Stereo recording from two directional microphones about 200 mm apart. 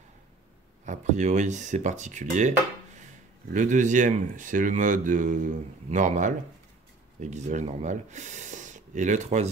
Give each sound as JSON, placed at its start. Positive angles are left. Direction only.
{"t": 0.8, "sound": "speech", "side_deg": -35}